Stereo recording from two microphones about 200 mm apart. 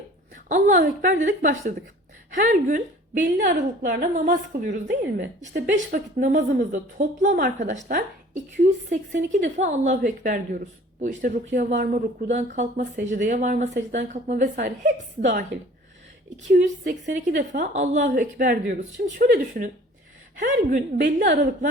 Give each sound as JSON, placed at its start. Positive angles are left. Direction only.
{"t": 0.4, "sound": "speech", "side_deg": -40}
{"t": 4.7, "sound": "speech", "side_deg": -55}
{"t": 5.6, "sound": "speech", "side_deg": -40}
{"t": 16.5, "sound": "speech", "side_deg": -40}